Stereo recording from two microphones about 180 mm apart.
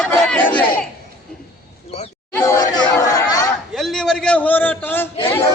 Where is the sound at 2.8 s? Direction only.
20° left (ahead or behind).